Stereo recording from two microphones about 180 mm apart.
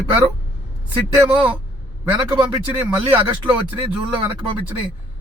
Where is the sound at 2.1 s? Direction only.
25° right (ahead or behind).